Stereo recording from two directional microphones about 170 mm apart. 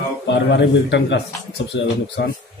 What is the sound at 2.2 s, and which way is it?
Speech, 90° left.